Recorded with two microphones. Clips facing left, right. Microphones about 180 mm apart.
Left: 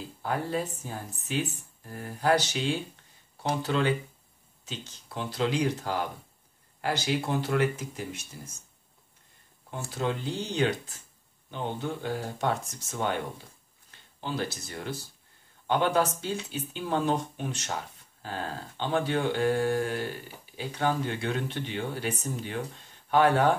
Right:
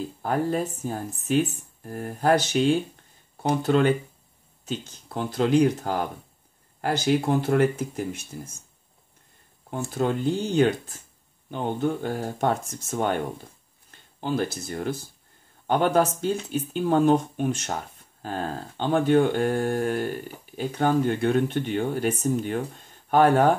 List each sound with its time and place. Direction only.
0.2 s speech: 50° right (ahead or behind)
9.8 s speech: 50° right (ahead or behind)